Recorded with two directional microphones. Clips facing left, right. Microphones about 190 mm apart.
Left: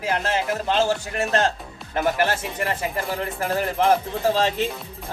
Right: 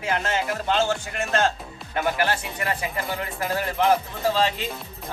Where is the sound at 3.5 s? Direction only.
35° left (ahead or behind).